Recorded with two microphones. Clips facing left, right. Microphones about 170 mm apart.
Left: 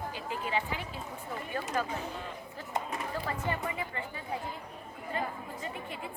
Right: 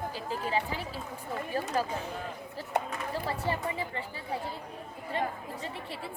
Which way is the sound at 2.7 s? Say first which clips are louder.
Right 4 dB; 70° right (ahead or behind).